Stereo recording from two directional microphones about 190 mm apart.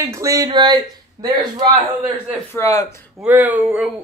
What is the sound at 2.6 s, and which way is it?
Speech, 20° left (ahead or behind).